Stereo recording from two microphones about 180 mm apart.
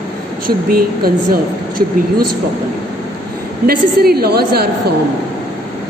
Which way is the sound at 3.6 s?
60° right (ahead or behind).